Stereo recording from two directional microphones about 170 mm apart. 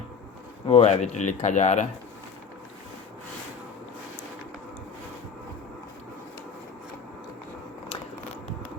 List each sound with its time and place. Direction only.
0.7 s speech: 40° left (ahead or behind)